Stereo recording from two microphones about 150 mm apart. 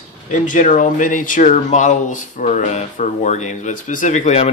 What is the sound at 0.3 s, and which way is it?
Speech, 60° left (ahead or behind).